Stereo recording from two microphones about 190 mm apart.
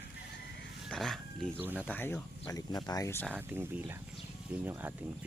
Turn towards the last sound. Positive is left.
turn(degrees=-10)  # may be behind; listen again after turning